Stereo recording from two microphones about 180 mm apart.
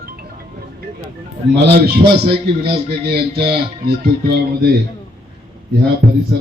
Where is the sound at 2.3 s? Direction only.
30° right (ahead or behind).